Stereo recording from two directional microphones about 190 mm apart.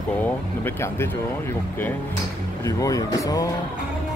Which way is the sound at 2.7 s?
20° left (ahead or behind).